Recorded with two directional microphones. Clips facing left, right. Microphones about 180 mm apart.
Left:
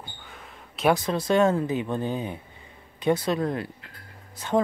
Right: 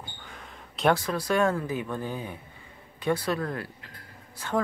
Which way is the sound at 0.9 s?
20° left (ahead or behind).